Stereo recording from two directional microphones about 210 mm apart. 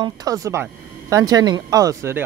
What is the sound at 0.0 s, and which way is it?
Speech, 15° right (ahead or behind).